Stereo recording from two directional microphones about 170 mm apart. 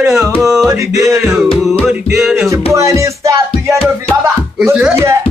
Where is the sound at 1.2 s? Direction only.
5° right (ahead or behind).